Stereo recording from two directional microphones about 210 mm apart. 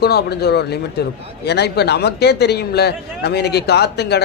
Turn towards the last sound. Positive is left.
turn(degrees=50)  # may be behind; listen again after turning